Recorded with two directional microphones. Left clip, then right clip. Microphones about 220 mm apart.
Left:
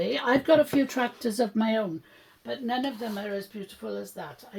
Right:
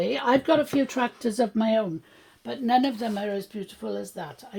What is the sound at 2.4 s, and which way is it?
Speech, 45° right (ahead or behind).